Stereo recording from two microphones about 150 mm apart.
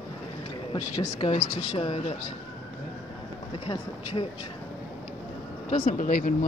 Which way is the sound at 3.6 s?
35° left (ahead or behind).